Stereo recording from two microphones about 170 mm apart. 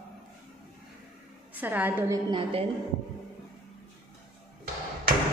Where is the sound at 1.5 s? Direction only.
10° right (ahead or behind).